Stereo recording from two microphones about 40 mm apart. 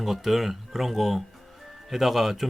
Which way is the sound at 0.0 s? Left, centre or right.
Centre.